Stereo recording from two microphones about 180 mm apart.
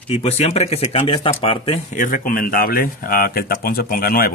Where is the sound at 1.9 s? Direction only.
45° left (ahead or behind).